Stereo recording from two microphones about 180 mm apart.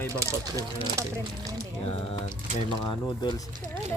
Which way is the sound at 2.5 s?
25° left (ahead or behind).